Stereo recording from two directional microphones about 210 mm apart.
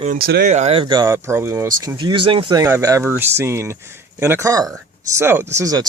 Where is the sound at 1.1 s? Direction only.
10° right (ahead or behind).